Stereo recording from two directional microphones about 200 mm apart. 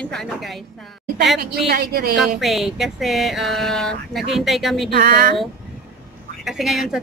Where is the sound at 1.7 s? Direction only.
50° right (ahead or behind).